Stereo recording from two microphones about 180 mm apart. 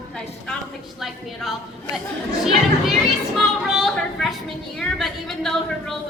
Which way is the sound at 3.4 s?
Centre (ahead or behind).